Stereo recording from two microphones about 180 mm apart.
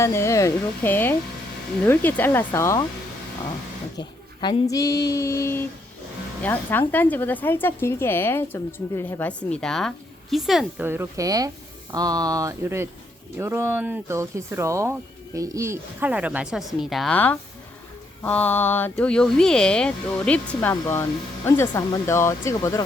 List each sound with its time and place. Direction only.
0.0 s speech: 15° left (ahead or behind)
3.9 s a sound: 25° left (ahead or behind)
4.7 s speech: 20° left (ahead or behind)